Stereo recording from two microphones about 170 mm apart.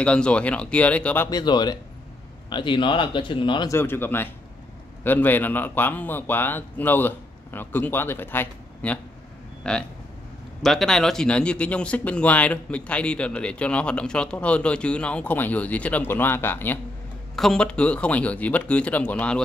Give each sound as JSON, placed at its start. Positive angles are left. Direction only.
{"t": 0.0, "sound": "speech", "side_deg": 5}
{"t": 1.3, "sound": "speech", "side_deg": 25}
{"t": 3.7, "sound": "speech", "side_deg": 10}